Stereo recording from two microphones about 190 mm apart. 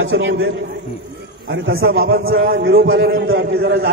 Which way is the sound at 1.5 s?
80° right.